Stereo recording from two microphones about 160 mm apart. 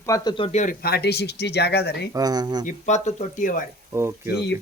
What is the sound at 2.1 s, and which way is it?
Speech, 25° right (ahead or behind).